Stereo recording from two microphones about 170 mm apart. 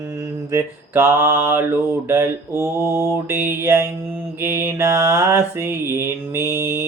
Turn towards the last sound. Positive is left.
turn(degrees=-15)  # may be behind; listen again after turning